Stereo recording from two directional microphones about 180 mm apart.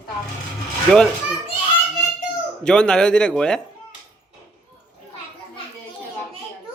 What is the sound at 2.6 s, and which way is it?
Speech, 5° left (ahead or behind).